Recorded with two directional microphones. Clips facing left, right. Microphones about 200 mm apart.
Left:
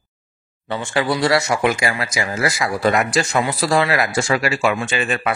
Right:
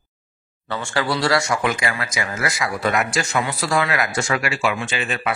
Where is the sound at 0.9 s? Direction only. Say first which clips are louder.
Left 3 dB; 20° left (ahead or behind).